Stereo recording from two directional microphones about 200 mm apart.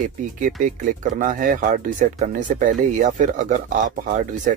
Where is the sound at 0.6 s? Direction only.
40° right (ahead or behind).